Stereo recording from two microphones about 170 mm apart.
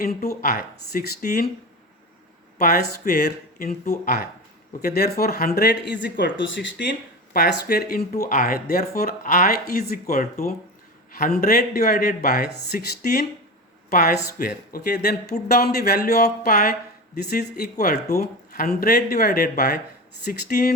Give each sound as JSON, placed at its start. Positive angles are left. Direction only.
{"t": 0.0, "sound": "speech", "side_deg": 60}
{"t": 2.6, "sound": "speech", "side_deg": 65}
{"t": 5.5, "sound": "speech", "side_deg": 80}
{"t": 7.3, "sound": "speech", "side_deg": 65}
{"t": 11.3, "sound": "speech", "side_deg": 60}